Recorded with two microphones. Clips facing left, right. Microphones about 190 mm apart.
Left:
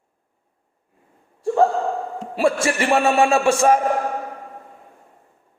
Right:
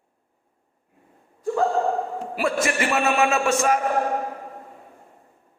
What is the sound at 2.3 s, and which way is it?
A man's voice, 30° left (ahead or behind).